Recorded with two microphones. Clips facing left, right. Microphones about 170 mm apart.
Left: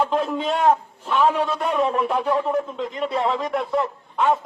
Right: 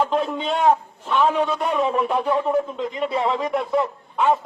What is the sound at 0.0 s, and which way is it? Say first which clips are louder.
A man's voice: even; centre (ahead or behind).